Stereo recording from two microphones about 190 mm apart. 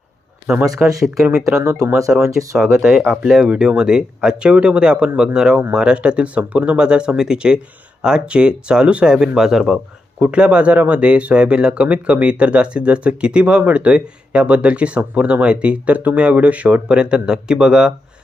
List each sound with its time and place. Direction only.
0.8 s speech: centre (ahead or behind)
1.8 s speech: 15° right (ahead or behind)
2.6 s speech: centre (ahead or behind)